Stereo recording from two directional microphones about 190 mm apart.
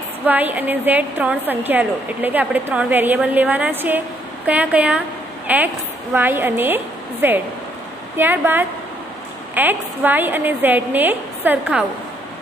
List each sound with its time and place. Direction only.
0.2 s a woman's voice: 10° right (ahead or behind)